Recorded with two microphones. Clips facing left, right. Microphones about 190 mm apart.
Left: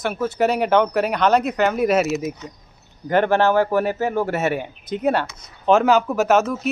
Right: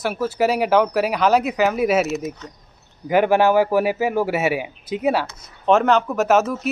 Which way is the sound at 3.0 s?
10° right (ahead or behind).